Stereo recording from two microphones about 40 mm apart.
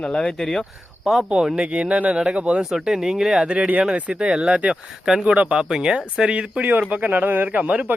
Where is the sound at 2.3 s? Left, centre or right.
Right.